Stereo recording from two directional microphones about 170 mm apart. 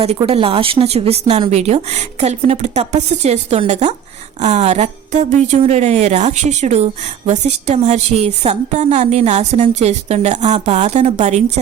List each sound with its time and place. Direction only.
0.0 s a woman's voice: 35° right (ahead or behind)